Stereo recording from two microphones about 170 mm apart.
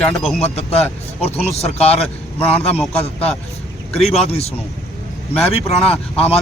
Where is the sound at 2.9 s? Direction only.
35° left (ahead or behind).